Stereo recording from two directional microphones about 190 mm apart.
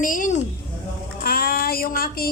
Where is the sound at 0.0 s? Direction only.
45° left (ahead or behind).